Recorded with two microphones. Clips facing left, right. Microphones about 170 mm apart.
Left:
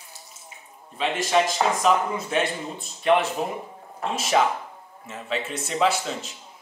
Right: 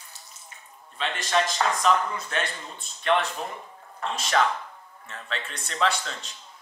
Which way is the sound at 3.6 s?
25° left (ahead or behind).